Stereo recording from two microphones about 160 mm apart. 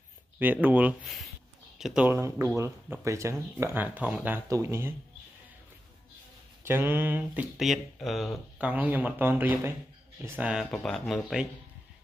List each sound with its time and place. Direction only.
0.4 s speech: 10° right (ahead or behind)
2.0 s speech: 15° right (ahead or behind)
6.6 s speech: 15° right (ahead or behind)
7.5 s speech: centre (ahead or behind)